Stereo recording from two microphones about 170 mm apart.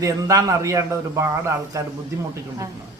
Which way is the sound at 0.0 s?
20° right (ahead or behind).